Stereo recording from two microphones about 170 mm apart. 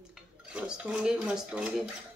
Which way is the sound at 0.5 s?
5° right (ahead or behind).